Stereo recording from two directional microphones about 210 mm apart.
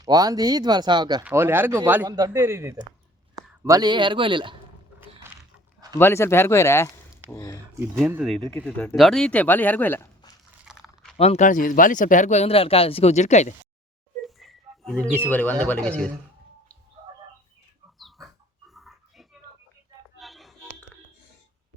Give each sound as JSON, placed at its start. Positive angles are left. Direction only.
{"t": 0.0, "sound": "a man's voice", "side_deg": -20}
{"t": 6.0, "sound": "speech", "side_deg": 10}
{"t": 8.0, "sound": "speech", "side_deg": -5}
{"t": 10.7, "sound": "crunch", "side_deg": 0}
{"t": 11.2, "sound": "speech", "side_deg": 35}
{"t": 14.2, "sound": "speech", "side_deg": 0}
{"t": 18.7, "sound": "a sound", "side_deg": 0}